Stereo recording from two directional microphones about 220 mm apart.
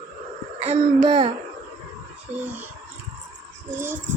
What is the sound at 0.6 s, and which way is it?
Speech, 20° right (ahead or behind).